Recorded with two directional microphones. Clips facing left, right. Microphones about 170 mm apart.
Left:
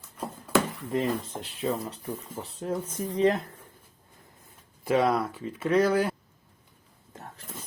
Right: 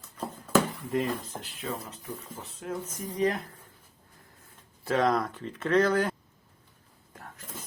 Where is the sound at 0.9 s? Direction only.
30° left (ahead or behind).